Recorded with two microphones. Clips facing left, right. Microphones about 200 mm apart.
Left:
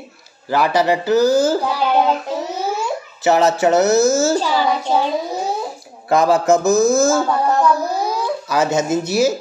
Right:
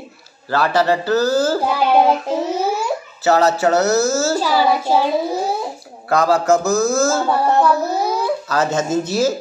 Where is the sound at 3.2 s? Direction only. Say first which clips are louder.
Left 1 dB; 20° left (ahead or behind).